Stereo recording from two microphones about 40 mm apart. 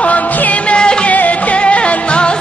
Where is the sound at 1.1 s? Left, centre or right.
Left.